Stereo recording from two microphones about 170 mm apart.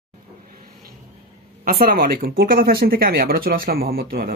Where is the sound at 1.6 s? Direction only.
60° right (ahead or behind).